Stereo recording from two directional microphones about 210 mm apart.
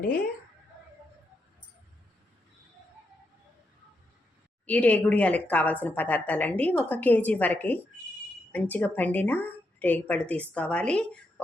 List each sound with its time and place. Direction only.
4.6 s a woman's voice: 5° left (ahead or behind)